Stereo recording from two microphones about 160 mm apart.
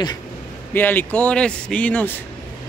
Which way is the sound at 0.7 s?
10° left (ahead or behind).